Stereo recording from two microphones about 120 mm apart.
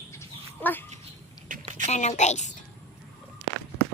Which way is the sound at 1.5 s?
90° right.